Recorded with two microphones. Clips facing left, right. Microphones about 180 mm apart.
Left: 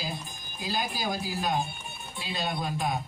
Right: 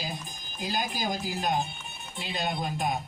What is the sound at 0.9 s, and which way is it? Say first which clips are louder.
A man's voice: even; 15° right (ahead or behind).